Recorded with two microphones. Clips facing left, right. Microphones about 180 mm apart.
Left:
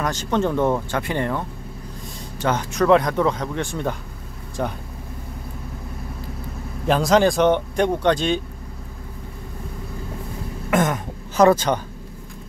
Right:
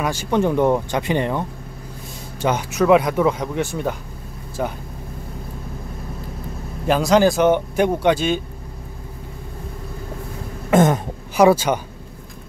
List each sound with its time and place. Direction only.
0.0 s speech: 10° right (ahead or behind)
2.4 s speech: 10° right (ahead or behind)
6.9 s speech: centre (ahead or behind)
10.7 s throat clearing: 25° right (ahead or behind)
11.3 s speech: 10° right (ahead or behind)